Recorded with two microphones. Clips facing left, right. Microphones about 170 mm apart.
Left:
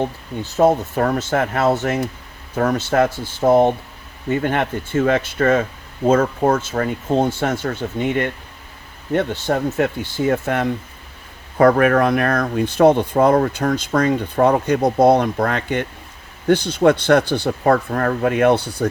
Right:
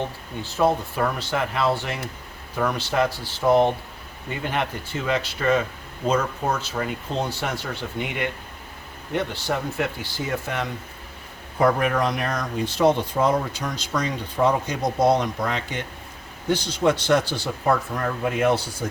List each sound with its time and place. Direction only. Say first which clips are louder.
0.5 s speech: left 6 dB; 45° left (ahead or behind)
11.5 s speech: left 7 dB; 65° left (ahead or behind)